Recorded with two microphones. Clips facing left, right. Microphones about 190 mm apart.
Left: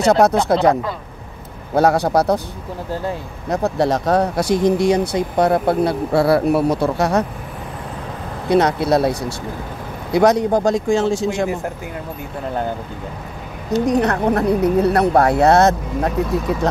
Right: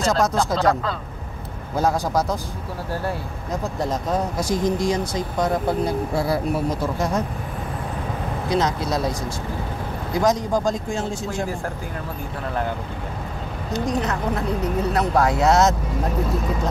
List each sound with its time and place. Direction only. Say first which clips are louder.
0.0 s speech: left 6 dB; 65° left (ahead or behind)
0.6 s speech: left 4 dB; 15° left (ahead or behind)
1.8 s speech: left 6 dB; 70° left (ahead or behind)
2.9 s speech: left 3 dB; 15° left (ahead or behind)
3.4 s speech: left 8 dB; 70° left (ahead or behind)
8.5 s speech: left 8 dB; 65° left (ahead or behind)
10.1 s speech: left 6 dB; 65° left (ahead or behind); by 11.4 s 90° left
13.8 s speech: left 7 dB; 65° left (ahead or behind)